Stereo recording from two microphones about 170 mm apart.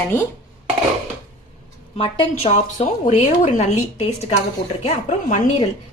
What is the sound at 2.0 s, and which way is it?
Speech, 35° left (ahead or behind).